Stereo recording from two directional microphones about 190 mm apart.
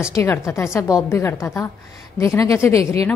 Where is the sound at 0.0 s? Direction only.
15° left (ahead or behind).